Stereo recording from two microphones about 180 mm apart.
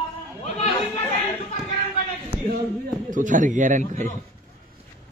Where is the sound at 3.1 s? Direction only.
45° right (ahead or behind).